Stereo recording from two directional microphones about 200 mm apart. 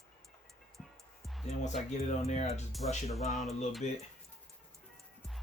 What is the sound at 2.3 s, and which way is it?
Speech, 35° left (ahead or behind).